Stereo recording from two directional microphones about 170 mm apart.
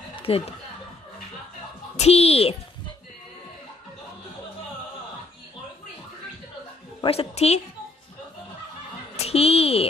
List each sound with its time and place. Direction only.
0.1 s speech: 35° left (ahead or behind)
2.0 s a woman's voice: 35° left (ahead or behind)
7.0 s a woman's voice: 35° left (ahead or behind)
9.1 s a woman's voice: 35° left (ahead or behind)